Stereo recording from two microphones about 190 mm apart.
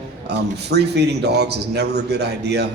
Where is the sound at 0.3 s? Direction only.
60° right (ahead or behind).